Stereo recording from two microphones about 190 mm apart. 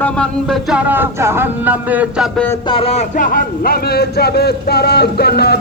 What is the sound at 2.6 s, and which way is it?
A man's voice, 30° left (ahead or behind).